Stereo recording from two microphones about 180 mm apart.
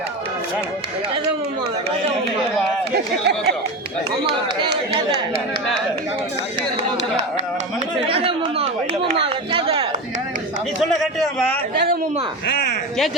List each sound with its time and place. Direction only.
2.9 s speech: 65° right (ahead or behind)
4.3 s speech: 25° right (ahead or behind)
6.9 s speech: 40° right (ahead or behind)
8.0 s speech: 30° right (ahead or behind)
10.8 s speech: centre (ahead or behind)